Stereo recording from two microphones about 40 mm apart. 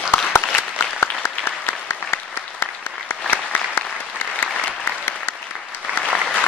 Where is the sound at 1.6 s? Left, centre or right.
Left.